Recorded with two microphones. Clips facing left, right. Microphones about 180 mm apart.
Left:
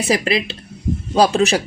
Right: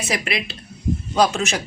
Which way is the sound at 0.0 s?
30° left (ahead or behind).